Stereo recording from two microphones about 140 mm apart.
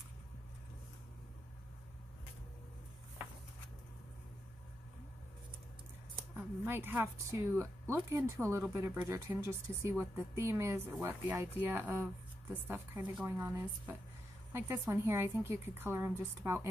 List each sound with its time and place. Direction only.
6.3 s speech: 15° right (ahead or behind)